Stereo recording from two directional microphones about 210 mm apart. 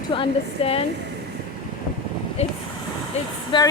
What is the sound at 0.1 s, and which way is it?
Speech, 25° left (ahead or behind).